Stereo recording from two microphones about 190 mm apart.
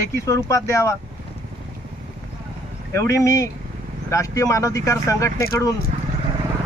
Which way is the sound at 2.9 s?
15° left (ahead or behind).